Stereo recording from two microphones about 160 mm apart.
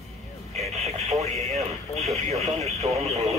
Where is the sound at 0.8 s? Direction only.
40° right (ahead or behind).